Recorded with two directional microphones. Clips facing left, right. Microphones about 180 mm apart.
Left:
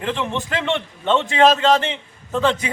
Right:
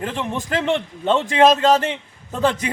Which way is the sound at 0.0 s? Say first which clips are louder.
Left 1 dB; 40° right (ahead or behind).